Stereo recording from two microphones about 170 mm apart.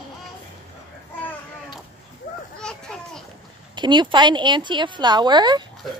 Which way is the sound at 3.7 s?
25° right (ahead or behind).